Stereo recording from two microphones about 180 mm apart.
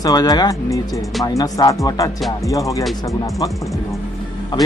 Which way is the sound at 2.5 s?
20° left (ahead or behind).